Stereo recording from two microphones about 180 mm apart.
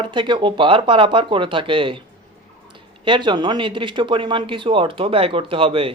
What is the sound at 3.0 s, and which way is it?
Speech, 25° right (ahead or behind).